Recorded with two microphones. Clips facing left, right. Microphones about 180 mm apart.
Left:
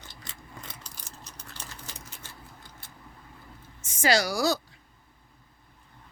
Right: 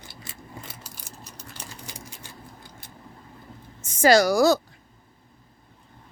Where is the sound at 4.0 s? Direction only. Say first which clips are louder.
Right 8 dB; 45° right (ahead or behind).